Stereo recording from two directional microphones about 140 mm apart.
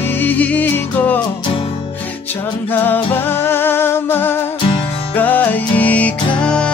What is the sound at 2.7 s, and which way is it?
Music, 15° left (ahead or behind).